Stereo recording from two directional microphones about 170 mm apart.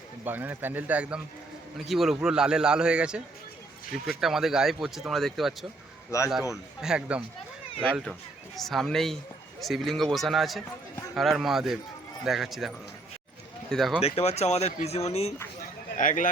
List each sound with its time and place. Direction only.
0.3 s a man's voice: 10° right (ahead or behind)
4.2 s speech: centre (ahead or behind)
6.1 s speech: 20° left (ahead or behind)
6.5 s speech: 5° right (ahead or behind)
8.5 s speech: centre (ahead or behind)
14.0 s speech: 40° left (ahead or behind)
16.0 s a man's voice: 50° left (ahead or behind)